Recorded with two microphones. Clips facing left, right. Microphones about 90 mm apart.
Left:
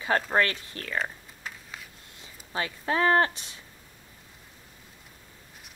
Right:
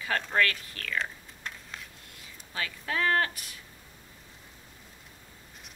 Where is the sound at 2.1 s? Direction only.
25° left (ahead or behind).